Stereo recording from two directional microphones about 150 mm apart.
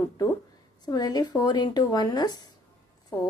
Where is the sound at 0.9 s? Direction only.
25° left (ahead or behind).